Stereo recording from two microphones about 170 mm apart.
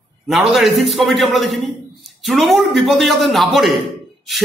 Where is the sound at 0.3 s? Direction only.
Centre (ahead or behind).